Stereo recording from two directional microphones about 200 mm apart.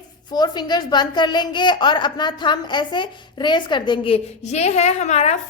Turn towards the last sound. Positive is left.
turn(degrees=35)  # may be behind; listen again after turning